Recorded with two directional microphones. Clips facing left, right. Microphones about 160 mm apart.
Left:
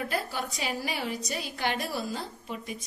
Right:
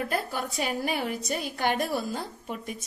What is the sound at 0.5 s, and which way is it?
A woman's voice, 50° right (ahead or behind).